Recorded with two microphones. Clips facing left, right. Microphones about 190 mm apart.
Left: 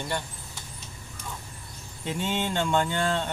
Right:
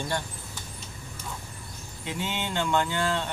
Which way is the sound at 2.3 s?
45° left (ahead or behind).